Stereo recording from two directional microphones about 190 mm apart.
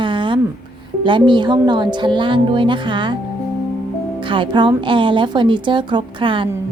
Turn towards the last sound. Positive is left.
turn(degrees=-25)  # may be behind; listen again after turning